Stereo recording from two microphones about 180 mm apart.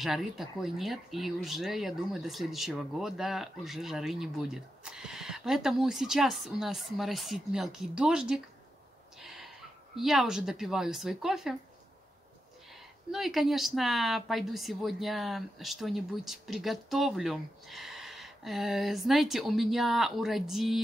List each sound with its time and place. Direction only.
0.0 s speech: centre (ahead or behind)
9.2 s a sound: centre (ahead or behind)
9.9 s speech: centre (ahead or behind)
13.1 s speech: centre (ahead or behind)